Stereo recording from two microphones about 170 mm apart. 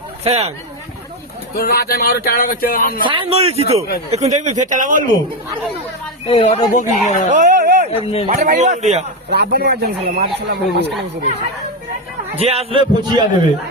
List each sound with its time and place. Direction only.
0.3 s a man's voice: 35° right (ahead or behind)
1.5 s speech: 70° left (ahead or behind)
3.0 s a man's voice: 30° right (ahead or behind); by 5.0 s 50° right (ahead or behind)
6.2 s speech: 40° left (ahead or behind)
7.3 s a sound: 45° right (ahead or behind)
8.0 s speech: 35° left (ahead or behind)
8.3 s speech: 45° right (ahead or behind)
9.3 s speech: 65° right (ahead or behind)
12.3 s a man's voice: 35° right (ahead or behind)